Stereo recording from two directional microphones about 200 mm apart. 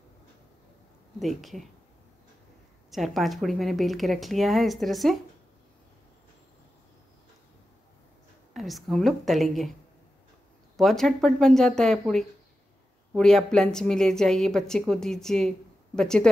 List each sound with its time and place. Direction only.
1.2 s a woman's voice: centre (ahead or behind)
2.9 s a woman's voice: centre (ahead or behind)
8.5 s a woman's voice: centre (ahead or behind)
10.8 s a woman's voice: centre (ahead or behind)